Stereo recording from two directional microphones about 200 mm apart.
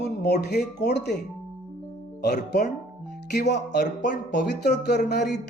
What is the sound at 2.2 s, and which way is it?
Speech, 55° left (ahead or behind).